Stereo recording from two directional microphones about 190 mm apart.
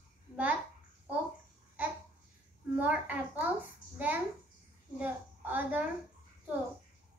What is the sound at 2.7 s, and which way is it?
A child's voice, 10° right (ahead or behind).